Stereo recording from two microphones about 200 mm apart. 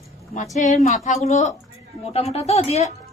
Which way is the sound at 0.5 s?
35° left (ahead or behind).